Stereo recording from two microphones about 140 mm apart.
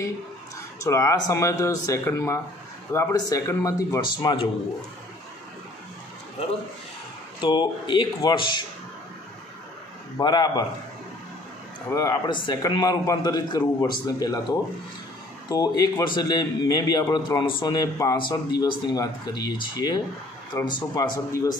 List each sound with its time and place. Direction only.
0.7 s a man's voice: 25° left (ahead or behind)
7.3 s speech: 35° left (ahead or behind)
10.1 s a man's voice: 30° left (ahead or behind)
11.9 s a man's voice: 25° left (ahead or behind)
15.4 s a man's voice: 30° left (ahead or behind)